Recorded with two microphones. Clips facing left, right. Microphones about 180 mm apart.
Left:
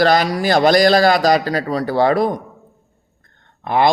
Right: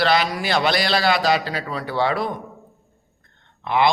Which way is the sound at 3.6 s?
45° left (ahead or behind).